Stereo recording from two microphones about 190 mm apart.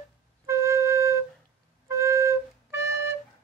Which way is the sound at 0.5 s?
15° right (ahead or behind).